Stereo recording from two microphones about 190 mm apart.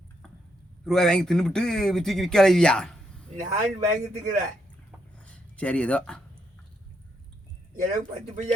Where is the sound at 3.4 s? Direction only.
40° right (ahead or behind).